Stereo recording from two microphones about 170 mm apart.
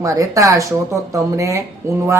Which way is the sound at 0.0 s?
20° right (ahead or behind).